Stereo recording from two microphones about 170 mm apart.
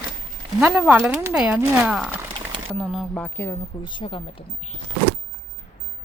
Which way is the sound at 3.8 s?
30° left (ahead or behind).